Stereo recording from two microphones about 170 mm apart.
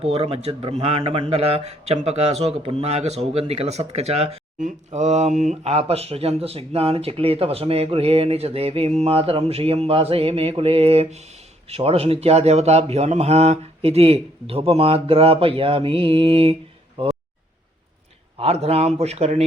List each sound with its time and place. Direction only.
0.0 s a man's voice: 35° right (ahead or behind)
18.3 s a man's voice: 35° right (ahead or behind)